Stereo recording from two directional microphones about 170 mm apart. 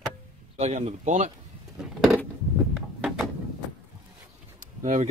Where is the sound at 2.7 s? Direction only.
5° right (ahead or behind).